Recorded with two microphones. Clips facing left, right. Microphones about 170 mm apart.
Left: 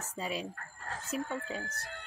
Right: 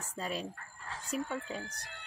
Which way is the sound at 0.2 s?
5° left (ahead or behind).